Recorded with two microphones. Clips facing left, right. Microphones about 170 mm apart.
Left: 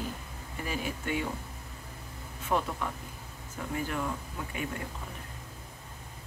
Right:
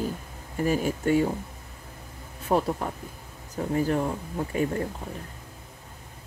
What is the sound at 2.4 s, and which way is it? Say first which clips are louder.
Speech: right 6 dB; 40° right (ahead or behind).